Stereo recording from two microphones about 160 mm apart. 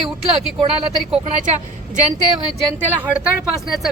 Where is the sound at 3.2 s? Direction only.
Centre (ahead or behind).